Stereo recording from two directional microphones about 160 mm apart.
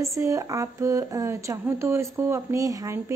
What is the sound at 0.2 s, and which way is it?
Speech, 20° right (ahead or behind).